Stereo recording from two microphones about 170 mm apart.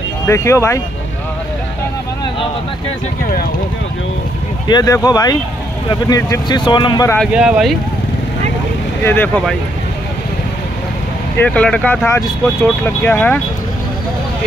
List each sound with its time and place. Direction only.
0.3 s speech: 15° left (ahead or behind)
4.6 s speech: 20° left (ahead or behind)
7.3 s speech: 5° right (ahead or behind)
9.0 s speech: 10° left (ahead or behind)
11.3 s speech: 10° left (ahead or behind)